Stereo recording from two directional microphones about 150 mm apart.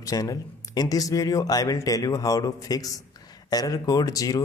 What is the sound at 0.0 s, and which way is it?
Speech, 25° left (ahead or behind).